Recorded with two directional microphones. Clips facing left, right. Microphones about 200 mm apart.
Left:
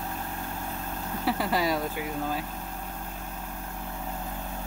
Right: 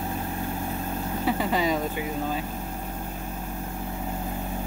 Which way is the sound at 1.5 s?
5° left (ahead or behind).